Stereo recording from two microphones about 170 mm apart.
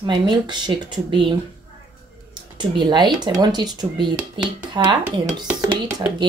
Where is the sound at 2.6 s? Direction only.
25° right (ahead or behind).